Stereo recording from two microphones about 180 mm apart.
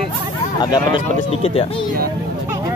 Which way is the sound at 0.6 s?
25° left (ahead or behind).